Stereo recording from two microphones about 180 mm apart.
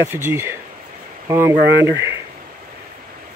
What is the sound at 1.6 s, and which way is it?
Speech, 75° right (ahead or behind).